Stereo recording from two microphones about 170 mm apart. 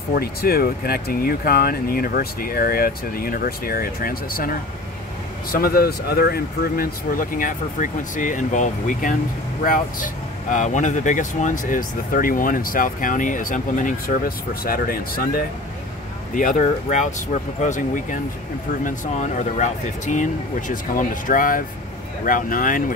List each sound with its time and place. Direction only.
0.1 s speech: 65° left (ahead or behind)
5.5 s speech: 60° left (ahead or behind)
16.3 s speech: 50° left (ahead or behind)